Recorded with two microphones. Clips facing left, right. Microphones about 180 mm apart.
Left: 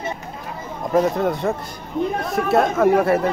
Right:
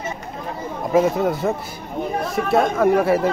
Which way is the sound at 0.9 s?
5° right (ahead or behind).